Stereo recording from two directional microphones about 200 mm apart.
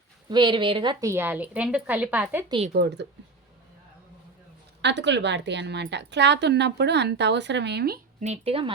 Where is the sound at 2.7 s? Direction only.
55° right (ahead or behind).